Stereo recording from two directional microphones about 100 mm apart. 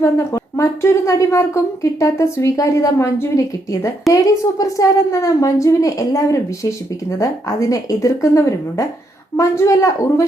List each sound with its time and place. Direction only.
0.0 s a woman's voice: 25° left (ahead or behind)